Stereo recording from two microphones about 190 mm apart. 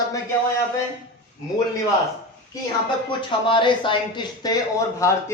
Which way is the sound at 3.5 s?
25° left (ahead or behind).